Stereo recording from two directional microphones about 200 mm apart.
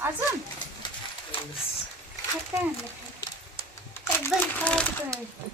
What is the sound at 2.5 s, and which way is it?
Speech, 10° right (ahead or behind).